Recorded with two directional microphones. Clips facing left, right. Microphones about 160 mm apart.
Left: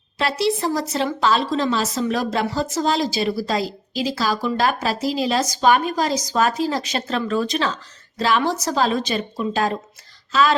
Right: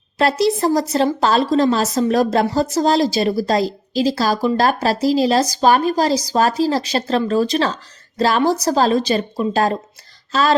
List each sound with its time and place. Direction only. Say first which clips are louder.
0.2 s a woman's voice: right 5 dB; 40° right (ahead or behind)